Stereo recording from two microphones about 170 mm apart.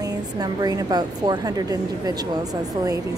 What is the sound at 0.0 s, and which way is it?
A woman's voice, 20° right (ahead or behind).